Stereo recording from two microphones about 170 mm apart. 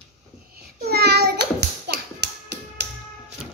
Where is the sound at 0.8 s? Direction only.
70° right (ahead or behind).